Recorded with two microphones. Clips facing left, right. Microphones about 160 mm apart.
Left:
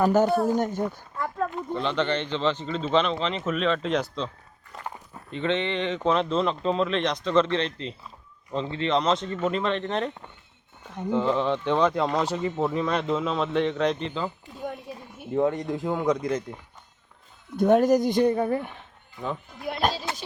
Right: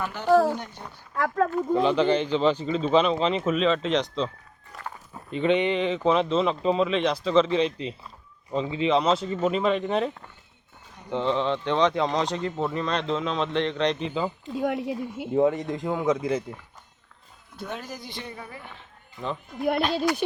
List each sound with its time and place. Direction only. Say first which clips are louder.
0.0 s speech: left 13 dB; 45° left (ahead or behind)
0.3 s speech: right 4 dB; 90° right
0.5 s speech: left 9 dB; 45° left (ahead or behind)
1.1 s speech: right 10 dB; 90° right
1.8 s speech: right 3 dB; 10° right (ahead or behind)
4.7 s walk: left 1 dB; 20° left (ahead or behind)
5.3 s speech: right 4 dB; 15° right (ahead or behind)
11.1 s speech: left 1 dB; 5° left (ahead or behind)
14.1 s speech: right 3 dB; 10° right (ahead or behind)
14.5 s speech: right 8 dB; 85° right
15.4 s speech: right 2 dB; 5° right (ahead or behind)
17.6 s speech: left 17 dB; 50° left (ahead or behind)